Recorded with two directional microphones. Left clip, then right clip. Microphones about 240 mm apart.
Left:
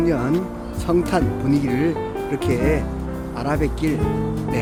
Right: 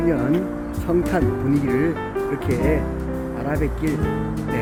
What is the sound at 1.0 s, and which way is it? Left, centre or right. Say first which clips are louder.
Speech: even; centre.